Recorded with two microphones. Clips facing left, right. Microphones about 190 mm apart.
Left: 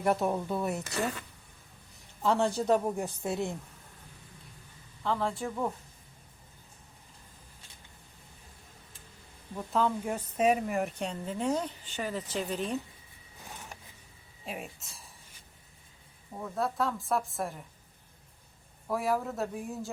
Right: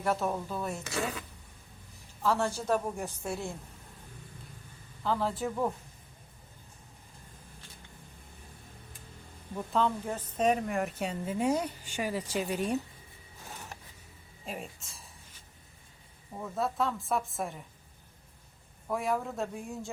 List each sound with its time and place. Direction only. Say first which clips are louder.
0.0 s speech: left 3 dB; 15° left (ahead or behind)
0.9 s a woman's voice: right 1 dB; centre (ahead or behind)
2.2 s a woman's voice: left 3 dB; 15° left (ahead or behind)
5.0 s a woman's voice: right 1 dB; centre (ahead or behind)
9.6 s speech: even; 5° left (ahead or behind)
14.4 s a woman's voice: even; centre (ahead or behind)
16.3 s a woman's voice: even; centre (ahead or behind)
18.9 s a woman's voice: left 1 dB; centre (ahead or behind)